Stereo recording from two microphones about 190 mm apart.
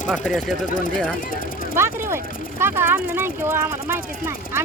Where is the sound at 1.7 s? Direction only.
15° right (ahead or behind).